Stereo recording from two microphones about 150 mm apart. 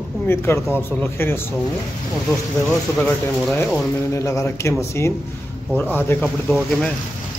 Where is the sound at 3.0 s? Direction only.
5° left (ahead or behind).